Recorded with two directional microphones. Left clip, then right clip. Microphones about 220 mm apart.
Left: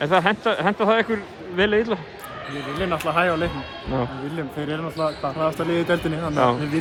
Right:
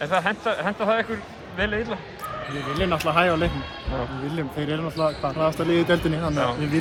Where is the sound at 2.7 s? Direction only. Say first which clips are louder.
Right 1 dB; 5° left (ahead or behind).